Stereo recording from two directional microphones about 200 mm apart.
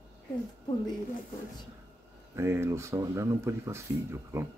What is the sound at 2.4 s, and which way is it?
Speech, 15° right (ahead or behind).